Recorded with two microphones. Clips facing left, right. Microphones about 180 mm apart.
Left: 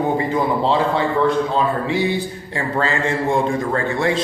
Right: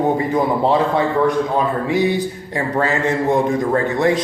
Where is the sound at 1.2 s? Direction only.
15° right (ahead or behind).